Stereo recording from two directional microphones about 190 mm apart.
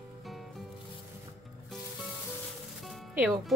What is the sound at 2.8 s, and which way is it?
Music, 5° right (ahead or behind).